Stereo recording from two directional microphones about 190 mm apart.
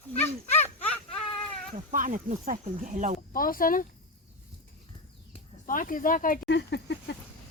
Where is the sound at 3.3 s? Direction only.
50° left (ahead or behind).